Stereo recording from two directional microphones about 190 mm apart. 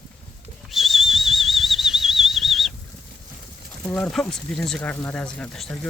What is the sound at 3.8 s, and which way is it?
Speech, 5° left (ahead or behind).